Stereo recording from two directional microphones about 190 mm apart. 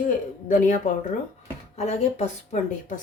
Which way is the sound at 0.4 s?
45° left (ahead or behind).